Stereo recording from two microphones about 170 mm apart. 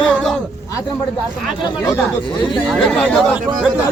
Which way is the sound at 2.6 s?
5° left (ahead or behind).